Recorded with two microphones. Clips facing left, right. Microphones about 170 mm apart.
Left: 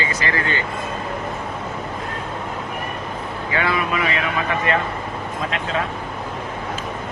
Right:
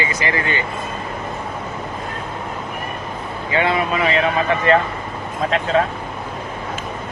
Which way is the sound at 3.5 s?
25° right (ahead or behind).